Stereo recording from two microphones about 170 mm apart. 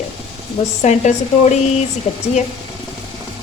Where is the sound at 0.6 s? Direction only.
45° left (ahead or behind).